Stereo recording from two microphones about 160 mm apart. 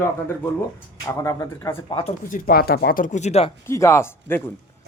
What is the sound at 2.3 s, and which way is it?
Speech, 70° left (ahead or behind).